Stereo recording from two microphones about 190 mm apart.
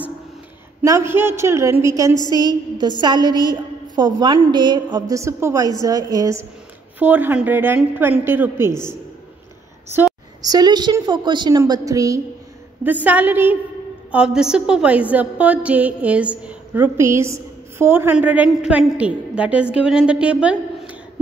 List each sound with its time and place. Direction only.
0.8 s a woman's voice: 15° right (ahead or behind)
10.4 s a woman's voice: 20° right (ahead or behind)